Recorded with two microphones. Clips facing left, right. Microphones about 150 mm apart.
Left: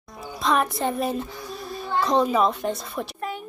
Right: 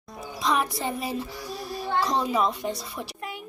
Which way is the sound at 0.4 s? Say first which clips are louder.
Left 3 dB; 55° left (ahead or behind).